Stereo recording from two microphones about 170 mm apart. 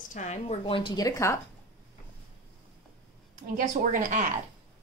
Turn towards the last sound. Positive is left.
turn(degrees=-50)  # may be behind; listen again after turning